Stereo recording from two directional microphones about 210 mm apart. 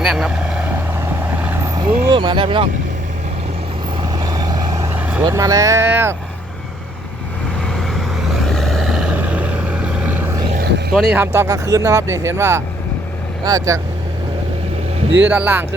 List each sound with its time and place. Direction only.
0.0 s vehicle: centre (ahead or behind)
1.9 s speech: 25° right (ahead or behind)
4.2 s vehicle: 15° right (ahead or behind)
4.9 s vehicle: 5° right (ahead or behind)
5.2 s speech: 15° right (ahead or behind)
7.7 s vehicle: centre (ahead or behind)
10.5 s vehicle: 45° right (ahead or behind)
10.9 s speech: 10° right (ahead or behind)
15.2 s speech: 10° right (ahead or behind)